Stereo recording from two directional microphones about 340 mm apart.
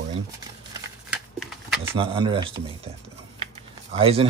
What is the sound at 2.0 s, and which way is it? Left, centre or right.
Speech, centre.